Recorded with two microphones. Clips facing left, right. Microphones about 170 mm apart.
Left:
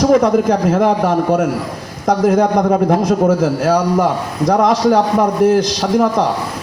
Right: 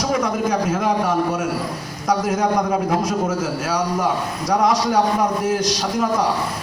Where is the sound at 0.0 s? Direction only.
60° left (ahead or behind).